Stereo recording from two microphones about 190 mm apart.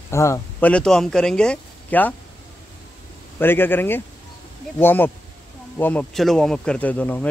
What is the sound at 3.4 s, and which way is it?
A child's voice, 10° left (ahead or behind).